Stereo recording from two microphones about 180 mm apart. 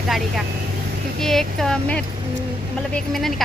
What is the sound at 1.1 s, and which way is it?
A woman's voice, centre (ahead or behind).